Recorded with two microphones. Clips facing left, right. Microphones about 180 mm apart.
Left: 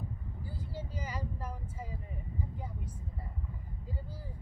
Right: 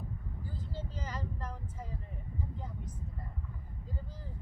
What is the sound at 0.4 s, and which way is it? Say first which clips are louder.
Vehicle: left 1 dB; 10° left (ahead or behind).